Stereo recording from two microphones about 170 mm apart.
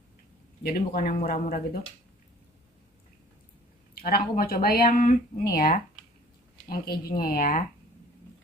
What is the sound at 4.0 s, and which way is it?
Speech, 60° left (ahead or behind).